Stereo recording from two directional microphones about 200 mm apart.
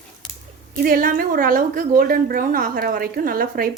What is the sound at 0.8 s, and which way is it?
Speech, 45° right (ahead or behind).